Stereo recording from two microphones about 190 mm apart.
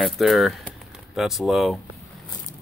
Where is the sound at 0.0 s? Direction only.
Centre (ahead or behind).